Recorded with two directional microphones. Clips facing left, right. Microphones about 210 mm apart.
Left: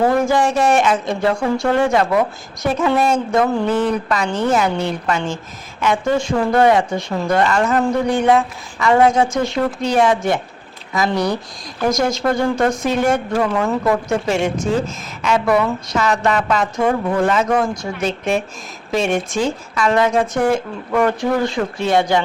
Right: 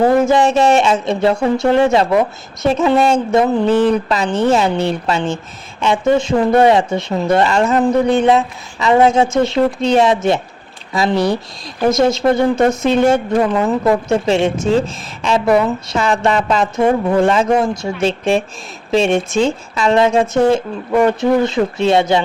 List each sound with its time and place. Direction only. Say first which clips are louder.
0.2 s a woman's voice: right 4 dB; 20° right (ahead or behind)